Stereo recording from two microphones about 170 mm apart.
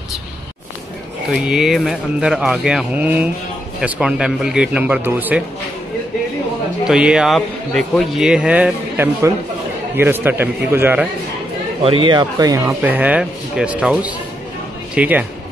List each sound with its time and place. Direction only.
1.3 s speech: 5° right (ahead or behind)
6.9 s speech: 5° right (ahead or behind)
11.8 s speech: 30° right (ahead or behind); by 15.2 s 10° right (ahead or behind)